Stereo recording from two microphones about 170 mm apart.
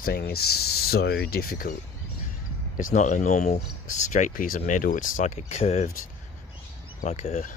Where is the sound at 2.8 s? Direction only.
50° left (ahead or behind).